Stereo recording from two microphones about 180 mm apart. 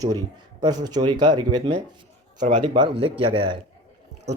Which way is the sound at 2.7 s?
25° right (ahead or behind).